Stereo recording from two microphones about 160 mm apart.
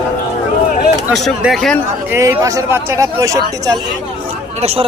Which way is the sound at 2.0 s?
15° right (ahead or behind).